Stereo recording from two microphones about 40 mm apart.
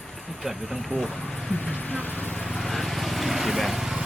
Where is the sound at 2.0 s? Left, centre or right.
Left.